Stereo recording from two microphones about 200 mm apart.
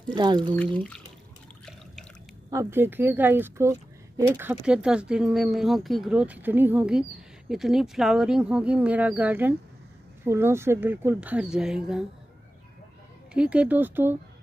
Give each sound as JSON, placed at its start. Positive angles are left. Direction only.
{"t": 0.1, "sound": "speech", "side_deg": -20}
{"t": 0.7, "sound": "speech", "side_deg": 5}
{"t": 2.5, "sound": "speech", "side_deg": -15}
{"t": 13.3, "sound": "speech", "side_deg": -5}